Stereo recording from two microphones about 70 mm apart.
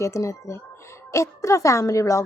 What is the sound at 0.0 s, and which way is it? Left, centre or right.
Speech, left.